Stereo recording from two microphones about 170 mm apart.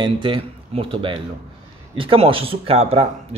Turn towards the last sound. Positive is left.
turn(degrees=-35)  # may be behind; listen again after turning